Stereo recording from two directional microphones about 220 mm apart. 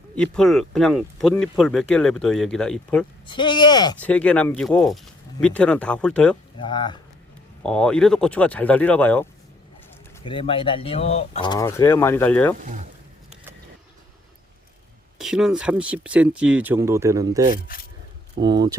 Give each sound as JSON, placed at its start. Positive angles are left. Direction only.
{"t": 0.2, "sound": "speech", "side_deg": 0}
{"t": 3.2, "sound": "speech", "side_deg": 20}
{"t": 4.0, "sound": "speech", "side_deg": 5}
{"t": 6.6, "sound": "speech", "side_deg": 20}
{"t": 7.6, "sound": "speech", "side_deg": 5}
{"t": 10.2, "sound": "speech", "side_deg": 25}
{"t": 12.5, "sound": "speech", "side_deg": -35}
{"t": 15.2, "sound": "speech", "side_deg": 0}